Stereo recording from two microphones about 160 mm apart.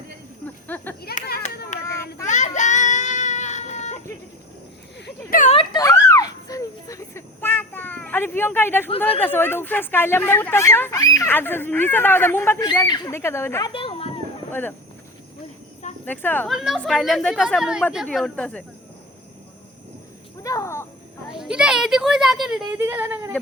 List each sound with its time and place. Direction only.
0.4 s snake: 10° left (ahead or behind)
1.7 s child singing: 50° left (ahead or behind)
5.5 s a sound: 20° left (ahead or behind)
9.1 s speech: 10° left (ahead or behind)
13.7 s a sound: 30° left (ahead or behind)
14.5 s speech: 10° left (ahead or behind)
16.0 s speech: 10° left (ahead or behind)
16.5 s speech: centre (ahead or behind)
20.4 s a sound: 20° left (ahead or behind)
21.2 s speech: 5° right (ahead or behind)
22.8 s speech: 15° right (ahead or behind)